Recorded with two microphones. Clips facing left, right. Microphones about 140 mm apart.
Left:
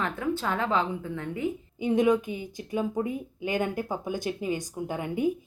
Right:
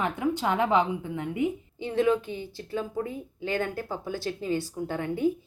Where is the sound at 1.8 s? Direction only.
15° left (ahead or behind).